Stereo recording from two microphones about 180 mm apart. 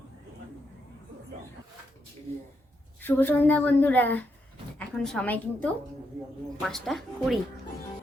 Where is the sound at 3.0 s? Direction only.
10° left (ahead or behind).